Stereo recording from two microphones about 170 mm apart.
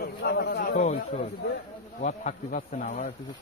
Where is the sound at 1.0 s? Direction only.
65° left (ahead or behind).